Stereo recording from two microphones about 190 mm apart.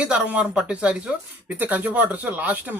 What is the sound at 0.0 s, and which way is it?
Speech, 5° right (ahead or behind).